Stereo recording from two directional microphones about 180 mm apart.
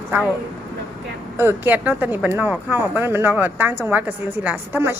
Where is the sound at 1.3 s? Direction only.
10° right (ahead or behind).